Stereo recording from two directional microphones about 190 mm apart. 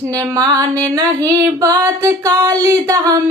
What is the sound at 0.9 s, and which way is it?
Female singing, 15° right (ahead or behind).